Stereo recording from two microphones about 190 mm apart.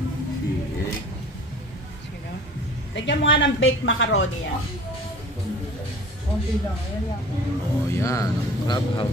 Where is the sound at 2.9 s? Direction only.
75° left (ahead or behind).